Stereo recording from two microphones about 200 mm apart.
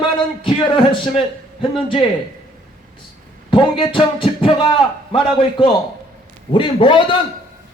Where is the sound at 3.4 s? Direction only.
25° left (ahead or behind).